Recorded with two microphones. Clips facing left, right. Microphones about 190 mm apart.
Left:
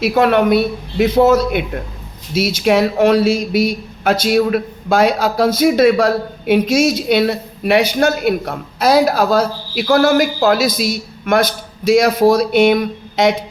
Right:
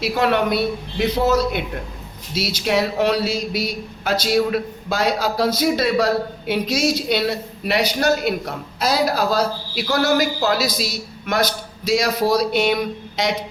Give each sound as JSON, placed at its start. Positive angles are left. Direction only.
{"t": 0.0, "sound": "speech", "side_deg": 55}